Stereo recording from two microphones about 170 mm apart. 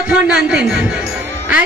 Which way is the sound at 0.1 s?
5° right (ahead or behind).